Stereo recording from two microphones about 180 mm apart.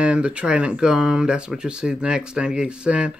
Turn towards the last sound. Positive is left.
turn(degrees=-5)  # may be behind; listen again after turning